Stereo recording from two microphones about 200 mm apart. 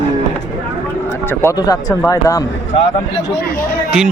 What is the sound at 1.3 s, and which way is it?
Speech, 10° left (ahead or behind).